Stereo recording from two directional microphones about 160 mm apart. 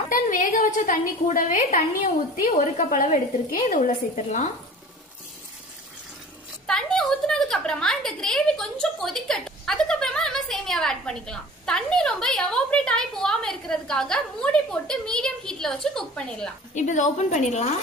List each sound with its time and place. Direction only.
0.1 s a woman's voice: 55° left (ahead or behind)
6.7 s a woman's voice: 5° left (ahead or behind)
16.7 s a woman's voice: 50° left (ahead or behind)